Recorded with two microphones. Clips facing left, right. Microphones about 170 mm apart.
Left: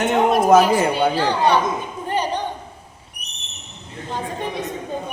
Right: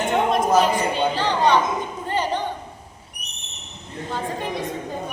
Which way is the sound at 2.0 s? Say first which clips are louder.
Left 2 dB; 15° left (ahead or behind).